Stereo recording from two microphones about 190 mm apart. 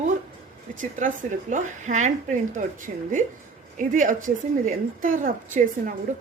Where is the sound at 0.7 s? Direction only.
45° right (ahead or behind).